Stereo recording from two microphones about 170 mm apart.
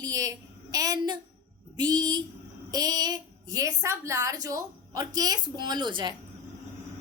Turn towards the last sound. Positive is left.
turn(degrees=-25)  # may be behind; listen again after turning